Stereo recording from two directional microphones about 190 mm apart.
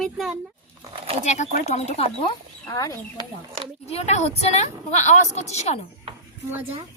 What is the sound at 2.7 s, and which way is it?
Speech, 15° left (ahead or behind).